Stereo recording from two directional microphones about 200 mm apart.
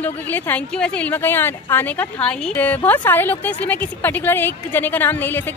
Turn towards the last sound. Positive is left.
turn(degrees=10)  # may be behind; listen again after turning